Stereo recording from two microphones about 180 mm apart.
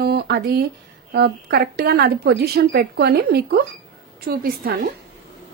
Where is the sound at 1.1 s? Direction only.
60° right (ahead or behind).